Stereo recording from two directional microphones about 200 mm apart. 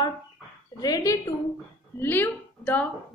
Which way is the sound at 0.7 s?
20° left (ahead or behind).